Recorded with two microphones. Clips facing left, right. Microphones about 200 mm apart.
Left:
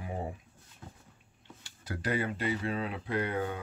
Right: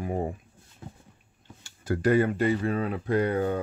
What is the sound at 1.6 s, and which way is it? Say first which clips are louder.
Speech: right 11 dB; 45° right (ahead or behind).